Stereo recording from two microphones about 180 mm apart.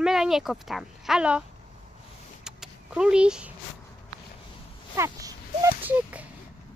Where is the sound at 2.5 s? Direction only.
5° right (ahead or behind).